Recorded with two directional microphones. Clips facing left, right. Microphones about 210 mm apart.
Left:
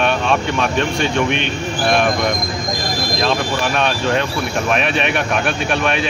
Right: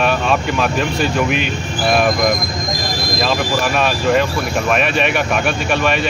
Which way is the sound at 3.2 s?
5° right (ahead or behind).